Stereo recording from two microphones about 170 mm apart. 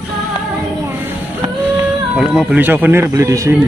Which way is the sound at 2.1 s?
5° right (ahead or behind).